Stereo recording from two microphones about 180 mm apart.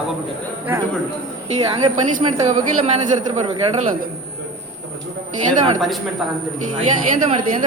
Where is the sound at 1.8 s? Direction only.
40° right (ahead or behind).